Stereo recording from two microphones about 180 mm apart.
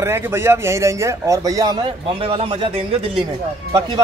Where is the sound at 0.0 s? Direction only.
15° right (ahead or behind).